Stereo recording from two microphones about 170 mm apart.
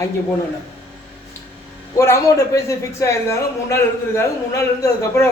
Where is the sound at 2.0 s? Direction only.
15° left (ahead or behind).